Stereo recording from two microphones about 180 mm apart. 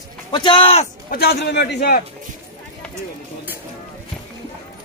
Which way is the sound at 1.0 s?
60° left (ahead or behind).